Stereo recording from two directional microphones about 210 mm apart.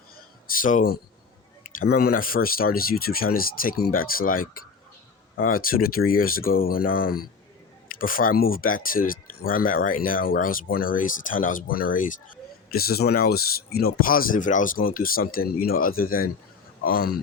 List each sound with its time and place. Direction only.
0.6 s speech: 40° left (ahead or behind)